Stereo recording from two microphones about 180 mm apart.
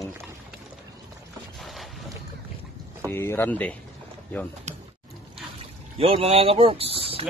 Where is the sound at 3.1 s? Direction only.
15° left (ahead or behind).